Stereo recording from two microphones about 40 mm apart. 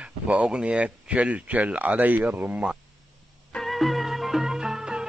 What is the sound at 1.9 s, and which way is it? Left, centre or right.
Speech, right.